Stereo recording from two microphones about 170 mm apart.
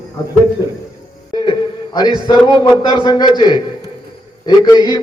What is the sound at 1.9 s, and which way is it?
A man's voice, 25° left (ahead or behind).